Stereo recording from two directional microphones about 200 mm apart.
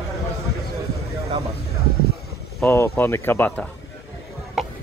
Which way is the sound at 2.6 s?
15° left (ahead or behind).